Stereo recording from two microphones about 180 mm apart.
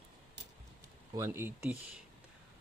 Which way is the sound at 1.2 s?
15° right (ahead or behind).